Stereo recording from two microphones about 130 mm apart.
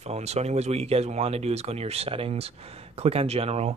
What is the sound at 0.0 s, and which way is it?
Speech, 55° right (ahead or behind).